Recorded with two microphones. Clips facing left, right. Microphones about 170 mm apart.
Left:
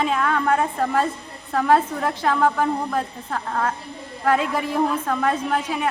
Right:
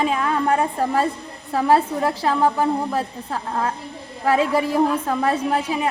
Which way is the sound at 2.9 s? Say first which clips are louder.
Right 1 dB; 10° right (ahead or behind).